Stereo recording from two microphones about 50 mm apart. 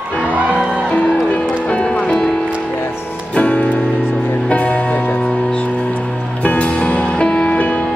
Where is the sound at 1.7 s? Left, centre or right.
Left.